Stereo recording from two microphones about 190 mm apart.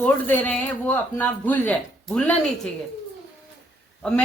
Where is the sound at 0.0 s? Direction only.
10° left (ahead or behind).